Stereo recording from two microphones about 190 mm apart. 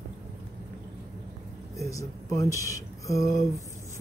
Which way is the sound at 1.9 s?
15° left (ahead or behind).